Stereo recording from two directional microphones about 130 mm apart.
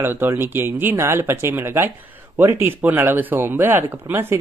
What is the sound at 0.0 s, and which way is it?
Speech, 15° right (ahead or behind).